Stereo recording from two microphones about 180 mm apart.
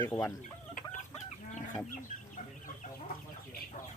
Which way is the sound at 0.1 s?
15° left (ahead or behind).